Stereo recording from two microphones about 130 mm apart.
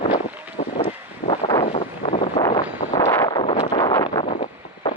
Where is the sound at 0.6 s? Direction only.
55° left (ahead or behind).